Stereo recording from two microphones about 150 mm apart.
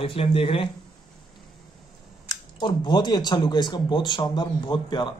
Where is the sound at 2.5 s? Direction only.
30° left (ahead or behind).